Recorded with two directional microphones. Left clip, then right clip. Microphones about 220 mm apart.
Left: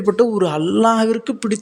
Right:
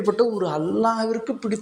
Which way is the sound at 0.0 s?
35° left (ahead or behind).